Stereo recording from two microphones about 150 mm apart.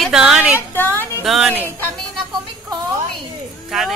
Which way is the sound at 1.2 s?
Centre (ahead or behind).